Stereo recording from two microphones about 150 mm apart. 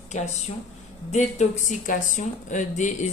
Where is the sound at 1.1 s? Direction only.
50° left (ahead or behind).